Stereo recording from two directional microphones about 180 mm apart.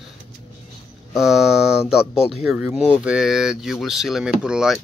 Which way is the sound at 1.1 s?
Centre (ahead or behind).